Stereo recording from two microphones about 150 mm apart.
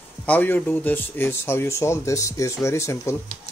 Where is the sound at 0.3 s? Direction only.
10° left (ahead or behind).